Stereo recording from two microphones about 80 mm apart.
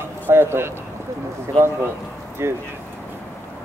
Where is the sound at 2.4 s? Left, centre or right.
Right.